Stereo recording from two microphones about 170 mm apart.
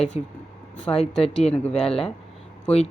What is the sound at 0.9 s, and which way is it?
Speech, 10° left (ahead or behind).